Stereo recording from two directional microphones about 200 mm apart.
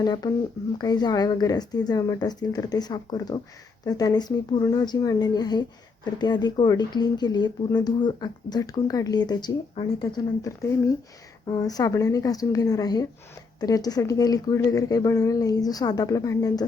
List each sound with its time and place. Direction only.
0.0 s speech: 20° left (ahead or behind)